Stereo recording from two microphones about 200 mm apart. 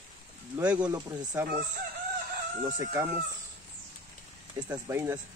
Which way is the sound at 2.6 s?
15° right (ahead or behind).